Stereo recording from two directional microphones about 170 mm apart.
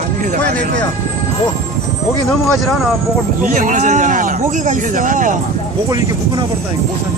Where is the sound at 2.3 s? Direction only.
Centre (ahead or behind).